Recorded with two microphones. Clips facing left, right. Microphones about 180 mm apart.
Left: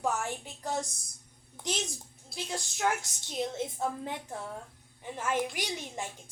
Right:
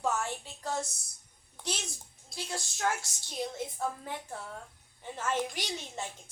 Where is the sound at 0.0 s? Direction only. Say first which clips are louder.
Even; 15° left (ahead or behind).